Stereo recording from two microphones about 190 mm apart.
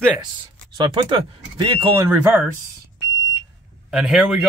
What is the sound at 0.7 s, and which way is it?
Speech, 25° right (ahead or behind).